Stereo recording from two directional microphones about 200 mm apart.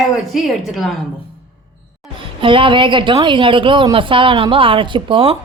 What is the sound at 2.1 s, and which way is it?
A woman's voice, 25° right (ahead or behind).